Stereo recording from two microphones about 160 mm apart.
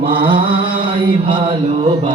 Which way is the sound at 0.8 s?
30° right (ahead or behind).